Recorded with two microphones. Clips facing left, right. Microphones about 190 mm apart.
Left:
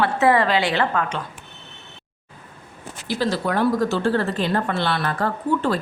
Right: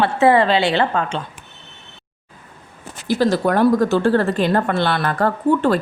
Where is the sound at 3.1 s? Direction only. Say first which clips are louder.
Right 6 dB; 45° right (ahead or behind).